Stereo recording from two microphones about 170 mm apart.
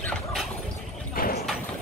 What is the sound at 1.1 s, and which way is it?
Horse, 60° left (ahead or behind).